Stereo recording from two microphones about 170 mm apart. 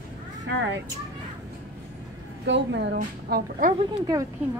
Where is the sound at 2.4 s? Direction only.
90° right; by 3.6 s 65° right (ahead or behind).